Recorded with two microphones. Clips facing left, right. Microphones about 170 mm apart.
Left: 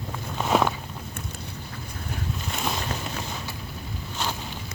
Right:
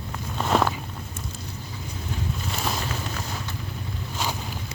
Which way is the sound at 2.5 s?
Centre (ahead or behind).